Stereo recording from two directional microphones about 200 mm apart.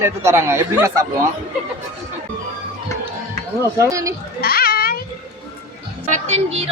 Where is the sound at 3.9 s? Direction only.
15° right (ahead or behind).